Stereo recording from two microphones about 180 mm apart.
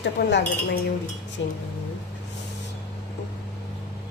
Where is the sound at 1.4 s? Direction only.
90° left.